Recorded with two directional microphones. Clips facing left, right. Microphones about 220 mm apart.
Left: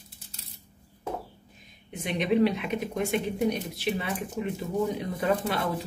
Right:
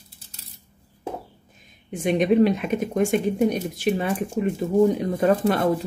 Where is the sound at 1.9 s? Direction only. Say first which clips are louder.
Right 7 dB; 50° right (ahead or behind).